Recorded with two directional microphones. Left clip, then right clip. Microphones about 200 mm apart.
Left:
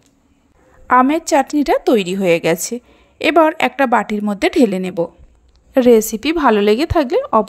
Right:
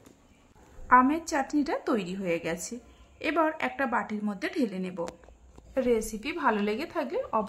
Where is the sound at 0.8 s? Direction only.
45° left (ahead or behind).